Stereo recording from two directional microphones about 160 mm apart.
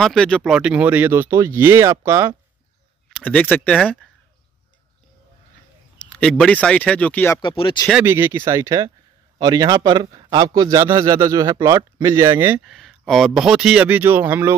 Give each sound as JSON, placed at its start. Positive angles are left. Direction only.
{"t": 0.0, "sound": "speech", "side_deg": 5}
{"t": 3.1, "sound": "speech", "side_deg": 5}
{"t": 3.8, "sound": "speech", "side_deg": -5}
{"t": 5.9, "sound": "speech", "side_deg": 5}
{"t": 7.4, "sound": "speech", "side_deg": 30}
{"t": 8.0, "sound": "a man's voice", "side_deg": -15}
{"t": 12.6, "sound": "speech", "side_deg": 0}